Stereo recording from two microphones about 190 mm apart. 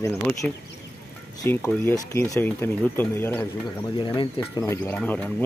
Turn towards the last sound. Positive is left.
turn(degrees=10)  # may be behind; listen again after turning